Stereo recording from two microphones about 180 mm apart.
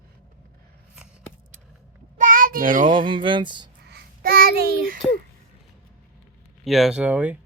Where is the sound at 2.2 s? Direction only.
50° right (ahead or behind).